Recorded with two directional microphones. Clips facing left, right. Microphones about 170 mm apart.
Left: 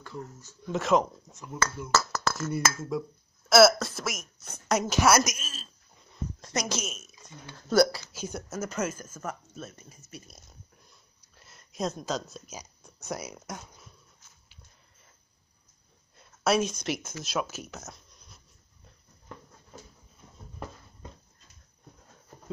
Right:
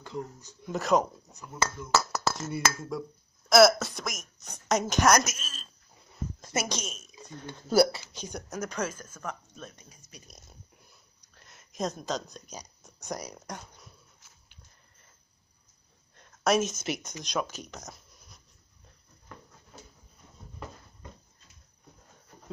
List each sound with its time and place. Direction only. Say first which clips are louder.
0.0 s speech: right 3 dB; 20° right (ahead or behind)
0.7 s speech: left 1 dB; centre (ahead or behind)
6.4 s a sound: even; 5° right (ahead or behind)
6.7 s speech: left 2 dB; 5° left (ahead or behind)
7.7 s speech: even; 10° right (ahead or behind)
8.1 s speech: left 2 dB; 5° left (ahead or behind)
16.2 s speech: even; centre (ahead or behind)